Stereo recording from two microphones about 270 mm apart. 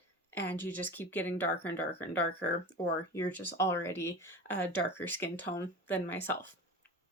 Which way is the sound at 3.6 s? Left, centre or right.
Centre.